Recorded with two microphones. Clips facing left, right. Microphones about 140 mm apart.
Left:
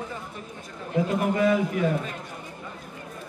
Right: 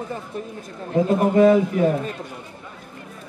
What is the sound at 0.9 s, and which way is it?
Speech, 35° right (ahead or behind).